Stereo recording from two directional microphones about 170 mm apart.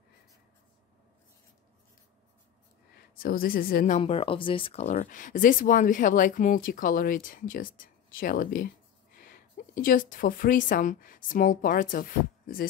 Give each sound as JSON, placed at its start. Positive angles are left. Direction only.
{"t": 3.2, "sound": "a woman's voice", "side_deg": 60}
{"t": 4.0, "sound": "speech", "side_deg": 35}